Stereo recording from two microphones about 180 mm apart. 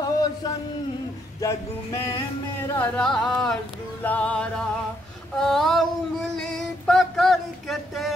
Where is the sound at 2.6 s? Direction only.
10° left (ahead or behind).